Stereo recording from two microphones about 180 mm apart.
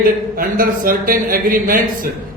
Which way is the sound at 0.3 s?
50° right (ahead or behind).